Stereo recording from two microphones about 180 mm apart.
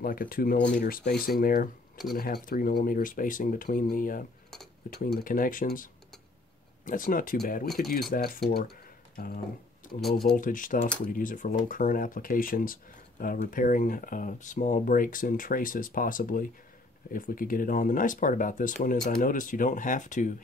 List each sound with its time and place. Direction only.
0.0 s speech: 50° left (ahead or behind)
8.5 s a sound: 55° left (ahead or behind)
9.9 s speech: centre (ahead or behind)
10.3 s speech: 50° left (ahead or behind)